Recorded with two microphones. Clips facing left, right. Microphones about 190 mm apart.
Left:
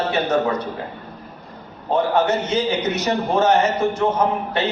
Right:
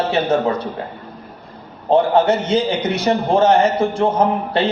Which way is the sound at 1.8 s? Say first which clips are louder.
Right 4 dB; 30° right (ahead or behind).